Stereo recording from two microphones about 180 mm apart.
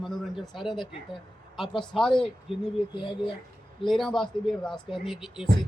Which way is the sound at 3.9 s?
Centre (ahead or behind).